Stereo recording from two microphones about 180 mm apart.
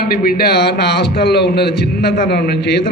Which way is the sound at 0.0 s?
55° left (ahead or behind).